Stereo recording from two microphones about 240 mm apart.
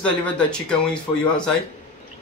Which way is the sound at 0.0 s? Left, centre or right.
Centre.